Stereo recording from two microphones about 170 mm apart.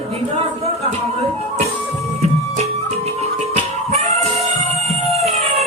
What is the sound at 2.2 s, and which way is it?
Music, 40° right (ahead or behind).